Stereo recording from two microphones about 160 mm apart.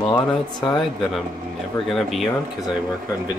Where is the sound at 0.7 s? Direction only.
Centre (ahead or behind).